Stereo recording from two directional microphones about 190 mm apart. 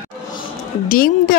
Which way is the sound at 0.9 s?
50° left (ahead or behind).